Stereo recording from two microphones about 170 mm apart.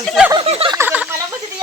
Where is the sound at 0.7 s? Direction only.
10° right (ahead or behind).